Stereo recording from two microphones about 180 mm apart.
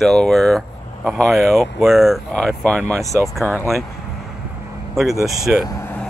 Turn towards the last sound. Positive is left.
turn(degrees=15)  # may be behind; listen again after turning